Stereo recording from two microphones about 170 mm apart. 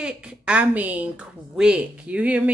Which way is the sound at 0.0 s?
10° right (ahead or behind).